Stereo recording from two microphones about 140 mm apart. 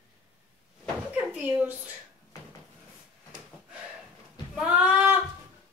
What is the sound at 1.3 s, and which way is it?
Speech, 15° right (ahead or behind).